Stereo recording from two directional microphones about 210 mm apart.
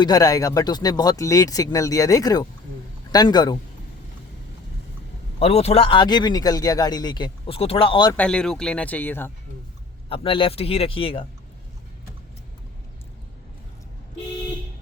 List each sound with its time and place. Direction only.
0.0 s speech: 15° left (ahead or behind)
5.4 s speech: 30° left (ahead or behind)
8.1 s speech: 5° left (ahead or behind)
10.1 s speech: 25° left (ahead or behind)